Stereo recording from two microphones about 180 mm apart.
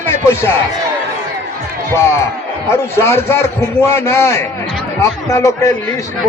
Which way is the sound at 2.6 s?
15° left (ahead or behind).